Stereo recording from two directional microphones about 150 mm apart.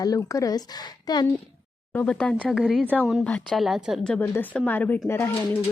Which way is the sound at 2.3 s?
10° right (ahead or behind).